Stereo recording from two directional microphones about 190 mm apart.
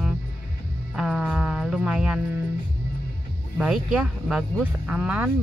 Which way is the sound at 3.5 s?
5° right (ahead or behind).